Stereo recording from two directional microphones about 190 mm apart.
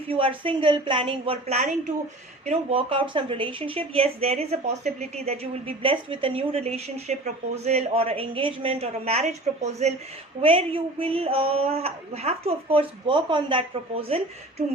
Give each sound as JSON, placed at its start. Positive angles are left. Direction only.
{"t": 0.1, "sound": "a woman's voice", "side_deg": -30}